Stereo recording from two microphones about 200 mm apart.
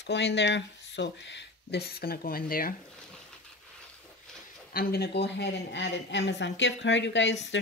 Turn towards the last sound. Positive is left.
turn(degrees=65)  # may be behind; listen again after turning